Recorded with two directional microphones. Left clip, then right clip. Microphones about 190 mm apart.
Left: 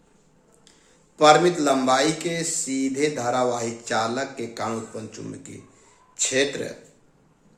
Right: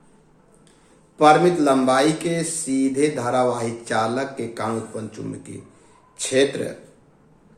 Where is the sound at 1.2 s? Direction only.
15° left (ahead or behind).